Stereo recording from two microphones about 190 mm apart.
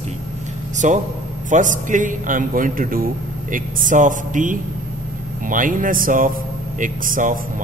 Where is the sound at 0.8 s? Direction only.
40° right (ahead or behind).